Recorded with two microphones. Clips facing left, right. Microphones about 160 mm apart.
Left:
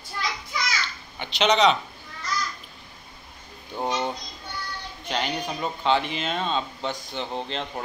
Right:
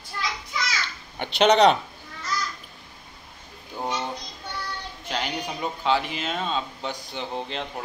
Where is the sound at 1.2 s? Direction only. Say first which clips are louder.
Right 3 dB; 55° right (ahead or behind).